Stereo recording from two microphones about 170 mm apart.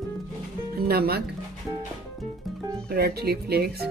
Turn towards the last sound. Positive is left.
turn(degrees=-70)  # may be behind; listen again after turning